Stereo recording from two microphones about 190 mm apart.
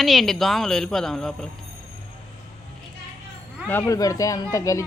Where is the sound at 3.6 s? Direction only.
10° left (ahead or behind).